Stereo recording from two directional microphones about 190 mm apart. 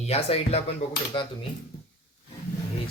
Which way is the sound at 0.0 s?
35° left (ahead or behind).